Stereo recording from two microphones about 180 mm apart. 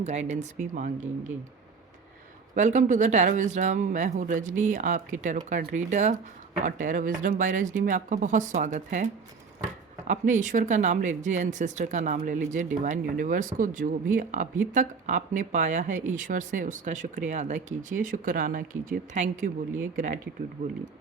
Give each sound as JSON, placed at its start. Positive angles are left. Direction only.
{"t": 0.0, "sound": "speech", "side_deg": -40}
{"t": 2.6, "sound": "speech", "side_deg": -40}
{"t": 10.1, "sound": "speech", "side_deg": -45}